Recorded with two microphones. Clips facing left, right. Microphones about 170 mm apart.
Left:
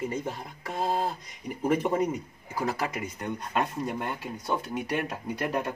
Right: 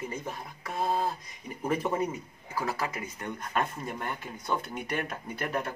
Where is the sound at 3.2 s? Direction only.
15° left (ahead or behind).